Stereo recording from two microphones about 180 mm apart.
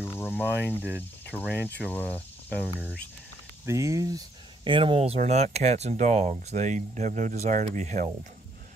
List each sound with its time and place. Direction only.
0.0 s cricket: 10° left (ahead or behind)
1.3 s speech: 10° left (ahead or behind)
3.6 s speech: 15° right (ahead or behind)
4.6 s speech: 30° right (ahead or behind)